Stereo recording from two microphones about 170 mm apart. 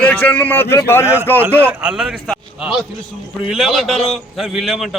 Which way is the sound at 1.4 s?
15° right (ahead or behind).